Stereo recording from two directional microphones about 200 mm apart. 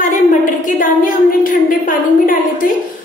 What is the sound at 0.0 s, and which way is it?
A woman's voice, 40° left (ahead or behind).